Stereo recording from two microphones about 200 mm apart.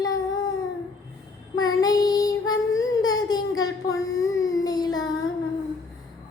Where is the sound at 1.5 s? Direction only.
20° left (ahead or behind).